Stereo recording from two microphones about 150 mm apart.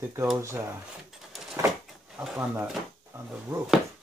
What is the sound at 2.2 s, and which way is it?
Speech, 5° right (ahead or behind).